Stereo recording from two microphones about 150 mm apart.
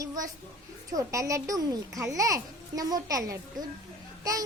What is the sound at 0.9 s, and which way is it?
A child's voice, 20° right (ahead or behind).